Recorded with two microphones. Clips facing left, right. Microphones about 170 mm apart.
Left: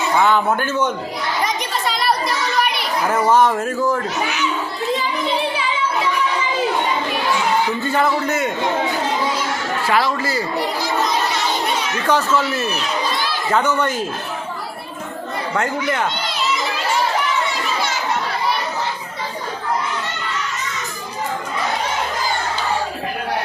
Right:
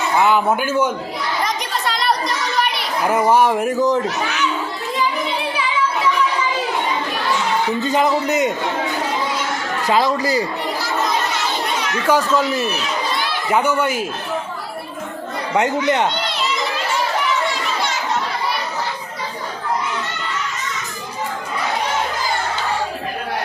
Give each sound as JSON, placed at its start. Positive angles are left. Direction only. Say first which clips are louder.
{"t": 0.2, "sound": "speech", "louder": "right 1 dB", "side_deg": -10}
{"t": 1.5, "sound": "children playing", "louder": "even", "side_deg": 0}
{"t": 3.1, "sound": "speech", "louder": "right 1 dB", "side_deg": -10}
{"t": 7.8, "sound": "speech", "louder": "right 1 dB", "side_deg": -20}
{"t": 9.8, "sound": "speech", "louder": "right 3 dB", "side_deg": -20}
{"t": 12.0, "sound": "speech", "louder": "right 2 dB", "side_deg": -10}
{"t": 15.5, "sound": "speech", "louder": "right 4 dB", "side_deg": -20}